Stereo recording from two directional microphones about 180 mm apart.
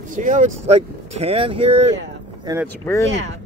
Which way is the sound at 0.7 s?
35° right (ahead or behind).